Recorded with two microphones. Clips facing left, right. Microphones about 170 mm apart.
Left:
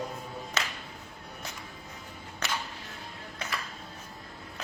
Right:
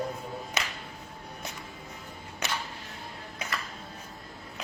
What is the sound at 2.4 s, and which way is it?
Music, 20° right (ahead or behind).